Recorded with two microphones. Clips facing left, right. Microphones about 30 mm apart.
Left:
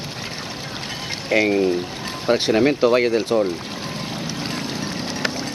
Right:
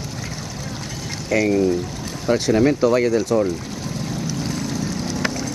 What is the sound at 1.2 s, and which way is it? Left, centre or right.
Speech, left.